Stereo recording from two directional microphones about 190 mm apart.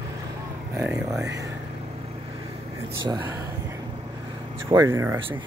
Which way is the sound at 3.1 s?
20° right (ahead or behind).